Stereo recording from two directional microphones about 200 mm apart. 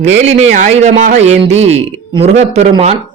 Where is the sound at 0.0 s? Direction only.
35° right (ahead or behind).